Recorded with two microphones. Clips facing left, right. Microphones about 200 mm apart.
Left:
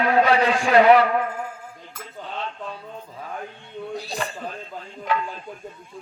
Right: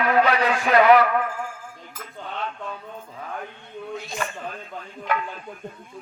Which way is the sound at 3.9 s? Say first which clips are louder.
Even; 35° left (ahead or behind).